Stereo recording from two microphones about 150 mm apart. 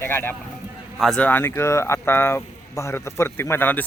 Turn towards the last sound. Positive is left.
turn(degrees=10)  # may be behind; listen again after turning